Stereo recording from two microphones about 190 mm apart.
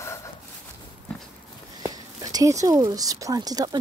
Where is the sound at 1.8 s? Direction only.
20° right (ahead or behind).